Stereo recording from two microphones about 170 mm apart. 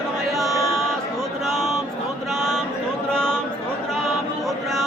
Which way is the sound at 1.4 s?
Centre (ahead or behind).